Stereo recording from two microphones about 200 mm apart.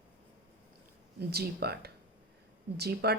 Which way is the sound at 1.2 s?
55° right (ahead or behind).